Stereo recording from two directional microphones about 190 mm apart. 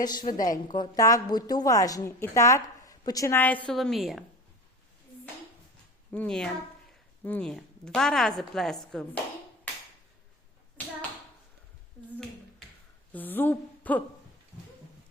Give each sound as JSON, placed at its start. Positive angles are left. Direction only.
{"t": 0.0, "sound": "a woman's voice", "side_deg": 20}
{"t": 6.1, "sound": "a woman's voice", "side_deg": 5}
{"t": 10.8, "sound": "a sound", "side_deg": 10}
{"t": 13.1, "sound": "a woman's voice", "side_deg": 10}